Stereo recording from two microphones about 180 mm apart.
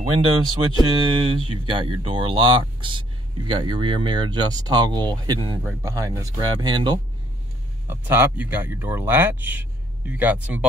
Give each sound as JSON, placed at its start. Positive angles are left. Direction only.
{"t": 0.1, "sound": "speech", "side_deg": -30}
{"t": 5.6, "sound": "speech", "side_deg": -15}
{"t": 7.9, "sound": "speech", "side_deg": -10}